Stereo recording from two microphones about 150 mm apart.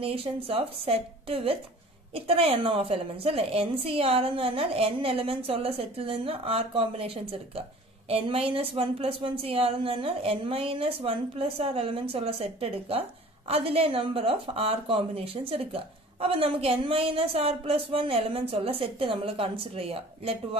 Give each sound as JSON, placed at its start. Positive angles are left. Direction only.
{"t": 0.0, "sound": "a woman's voice", "side_deg": -40}